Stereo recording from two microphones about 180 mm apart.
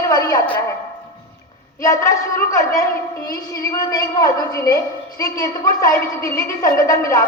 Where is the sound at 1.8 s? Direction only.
15° left (ahead or behind).